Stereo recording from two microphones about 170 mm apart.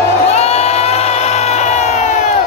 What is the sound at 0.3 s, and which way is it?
Crowd, 35° left (ahead or behind).